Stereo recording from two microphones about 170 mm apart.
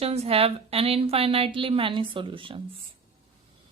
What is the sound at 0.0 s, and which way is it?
Speech, 35° right (ahead or behind).